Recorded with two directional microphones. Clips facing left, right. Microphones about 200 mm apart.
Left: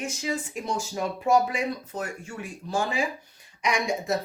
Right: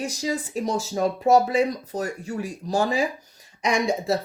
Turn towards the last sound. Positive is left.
turn(degrees=-35)  # may be behind; listen again after turning